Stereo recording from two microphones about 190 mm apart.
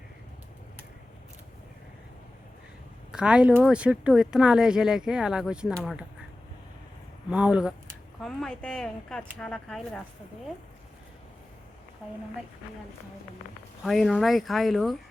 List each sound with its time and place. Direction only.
3.1 s speech: 5° right (ahead or behind)
7.3 s speech: 5° right (ahead or behind)
13.8 s speech: centre (ahead or behind)